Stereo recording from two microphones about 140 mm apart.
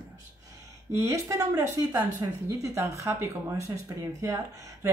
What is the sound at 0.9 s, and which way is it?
Speech, 20° right (ahead or behind).